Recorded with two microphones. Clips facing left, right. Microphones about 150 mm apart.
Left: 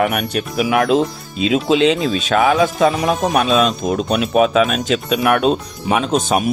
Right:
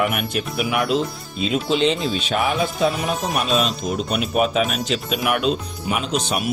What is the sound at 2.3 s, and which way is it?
Speech, 90° left.